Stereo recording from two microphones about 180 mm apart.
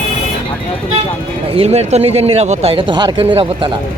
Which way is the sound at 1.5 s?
35° right (ahead or behind).